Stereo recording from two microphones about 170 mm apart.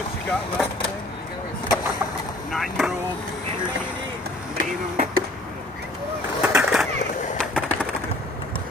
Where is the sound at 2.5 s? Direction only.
Centre (ahead or behind).